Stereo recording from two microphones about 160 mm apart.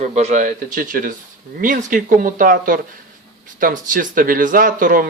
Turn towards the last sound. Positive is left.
turn(degrees=-55)  # may be behind; listen again after turning